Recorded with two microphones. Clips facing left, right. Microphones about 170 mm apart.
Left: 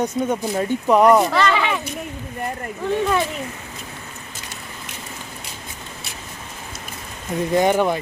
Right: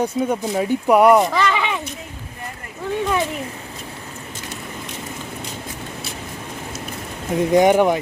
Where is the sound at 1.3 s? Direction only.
15° right (ahead or behind).